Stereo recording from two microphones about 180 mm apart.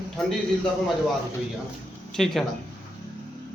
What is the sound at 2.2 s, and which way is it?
Speech, centre (ahead or behind).